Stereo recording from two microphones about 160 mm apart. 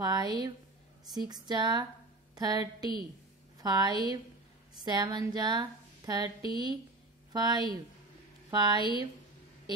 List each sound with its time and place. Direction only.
0.0 s a woman's voice: 25° right (ahead or behind)